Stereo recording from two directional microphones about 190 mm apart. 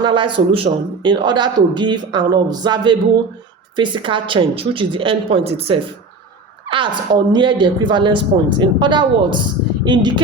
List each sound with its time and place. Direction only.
0.0 s a man's voice: 25° right (ahead or behind)